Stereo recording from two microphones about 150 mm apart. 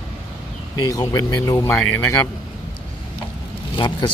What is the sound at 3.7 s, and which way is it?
Vehicle, 30° left (ahead or behind).